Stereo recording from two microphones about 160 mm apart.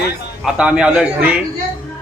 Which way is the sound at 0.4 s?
5° right (ahead or behind).